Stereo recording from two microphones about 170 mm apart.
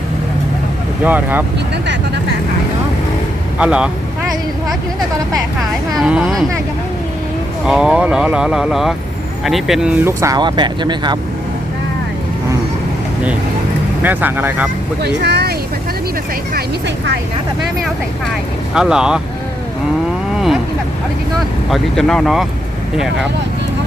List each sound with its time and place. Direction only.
1.0 s speech: 10° right (ahead or behind)
3.6 s speech: 5° right (ahead or behind)
5.9 s speech: centre (ahead or behind)
7.6 s speech: 5° right (ahead or behind); by 11.2 s 25° right (ahead or behind)
14.0 s speech: 10° right (ahead or behind)
15.0 s speech: 75° right (ahead or behind)
16.6 s speech: 80° right
18.7 s speech: 5° right (ahead or behind)
21.7 s speech: 5° left (ahead or behind)